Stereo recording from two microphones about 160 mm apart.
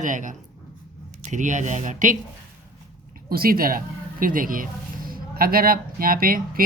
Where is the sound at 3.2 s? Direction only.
70° right (ahead or behind).